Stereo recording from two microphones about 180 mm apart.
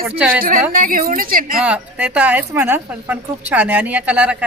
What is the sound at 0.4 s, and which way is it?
A woman's voice, 50° right (ahead or behind).